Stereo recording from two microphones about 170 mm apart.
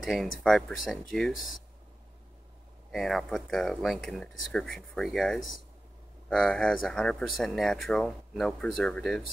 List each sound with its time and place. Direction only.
0.0 s speech: centre (ahead or behind)
2.9 s speech: centre (ahead or behind)